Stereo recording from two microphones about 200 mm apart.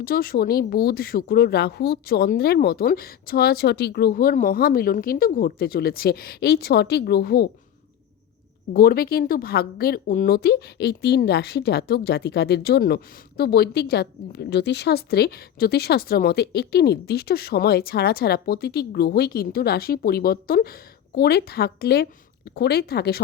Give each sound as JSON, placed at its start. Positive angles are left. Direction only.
{"t": 0.0, "sound": "speech", "side_deg": 50}
{"t": 8.7, "sound": "speech", "side_deg": 50}